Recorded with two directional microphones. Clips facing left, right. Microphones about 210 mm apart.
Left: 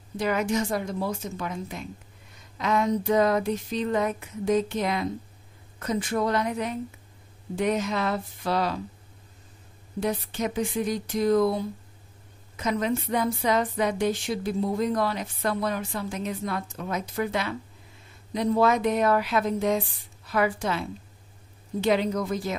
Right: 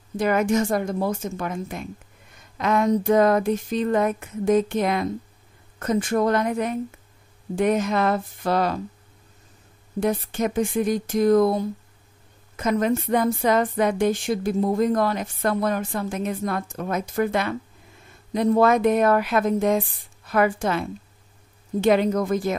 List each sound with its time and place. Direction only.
0.2 s a woman's voice: 50° right (ahead or behind)
9.9 s a woman's voice: 50° right (ahead or behind)